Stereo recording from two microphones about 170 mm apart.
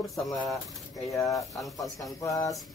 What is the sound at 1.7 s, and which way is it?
Speech, 20° left (ahead or behind).